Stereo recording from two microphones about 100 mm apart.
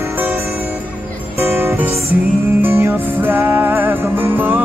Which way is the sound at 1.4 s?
25° right (ahead or behind).